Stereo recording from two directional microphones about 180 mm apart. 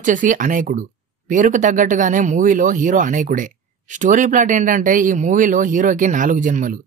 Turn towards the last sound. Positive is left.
turn(degrees=-45)  # may be behind; listen again after turning